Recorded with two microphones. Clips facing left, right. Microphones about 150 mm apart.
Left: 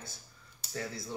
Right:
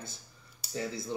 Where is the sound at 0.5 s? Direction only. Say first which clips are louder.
Right 3 dB; 20° right (ahead or behind).